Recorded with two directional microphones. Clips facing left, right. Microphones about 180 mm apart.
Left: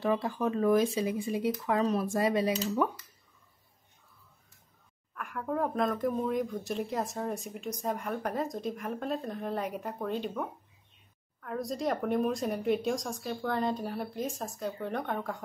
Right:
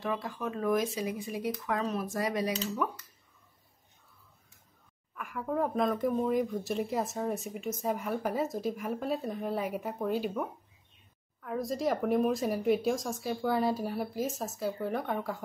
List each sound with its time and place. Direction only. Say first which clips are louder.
0.0 s speech: left 5 dB; 30° left (ahead or behind)
5.1 s speech: right 1 dB; centre (ahead or behind)